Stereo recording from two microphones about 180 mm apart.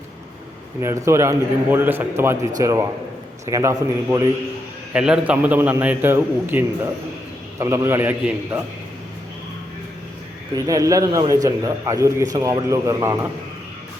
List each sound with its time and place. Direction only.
0.8 s a man's voice: 15° right (ahead or behind)
4.9 s a man's voice: 5° right (ahead or behind)
10.5 s a man's voice: 20° right (ahead or behind)